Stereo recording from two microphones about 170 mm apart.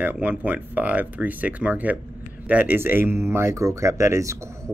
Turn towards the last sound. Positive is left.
turn(degrees=-15)  # may be behind; listen again after turning